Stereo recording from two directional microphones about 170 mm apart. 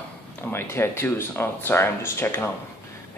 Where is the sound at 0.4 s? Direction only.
15° left (ahead or behind).